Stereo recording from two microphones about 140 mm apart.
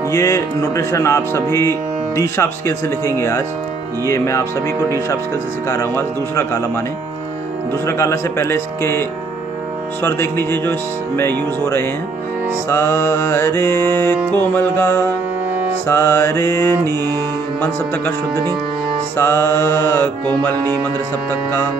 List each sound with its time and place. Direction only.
0.1 s speech: 20° left (ahead or behind)
7.8 s speech: 20° left (ahead or behind)
10.0 s speech: 15° left (ahead or behind)
21.3 s speech: 15° left (ahead or behind)